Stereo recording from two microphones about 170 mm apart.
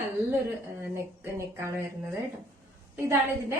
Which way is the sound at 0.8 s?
15° right (ahead or behind).